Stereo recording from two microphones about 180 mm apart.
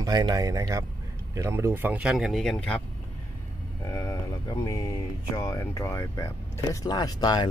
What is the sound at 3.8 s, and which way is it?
Speech, 20° left (ahead or behind).